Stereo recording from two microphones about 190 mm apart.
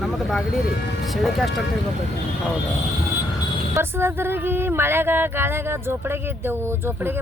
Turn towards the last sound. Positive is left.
turn(degrees=-10)  # may be behind; listen again after turning